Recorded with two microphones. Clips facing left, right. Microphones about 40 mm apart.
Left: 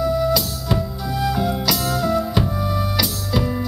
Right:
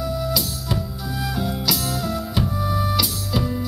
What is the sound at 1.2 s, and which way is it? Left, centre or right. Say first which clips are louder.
Music: left 4 dB; centre.